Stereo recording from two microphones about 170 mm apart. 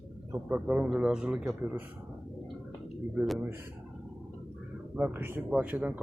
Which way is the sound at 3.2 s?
10° right (ahead or behind).